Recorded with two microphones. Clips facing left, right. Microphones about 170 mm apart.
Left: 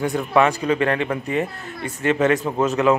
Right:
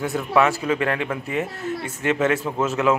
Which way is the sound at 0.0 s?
5° right (ahead or behind).